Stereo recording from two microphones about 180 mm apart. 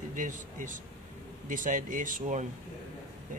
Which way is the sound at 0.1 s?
45° right (ahead or behind).